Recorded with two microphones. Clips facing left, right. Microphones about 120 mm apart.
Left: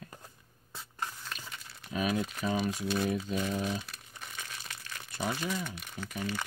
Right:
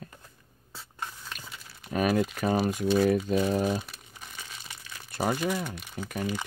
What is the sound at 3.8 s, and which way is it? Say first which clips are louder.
Crumpling: right 1 dB; centre (ahead or behind).